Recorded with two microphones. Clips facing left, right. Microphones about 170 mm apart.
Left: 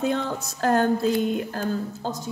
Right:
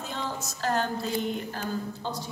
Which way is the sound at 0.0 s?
60° left (ahead or behind).